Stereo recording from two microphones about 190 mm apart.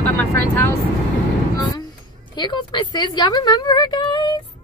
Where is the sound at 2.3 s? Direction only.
25° left (ahead or behind).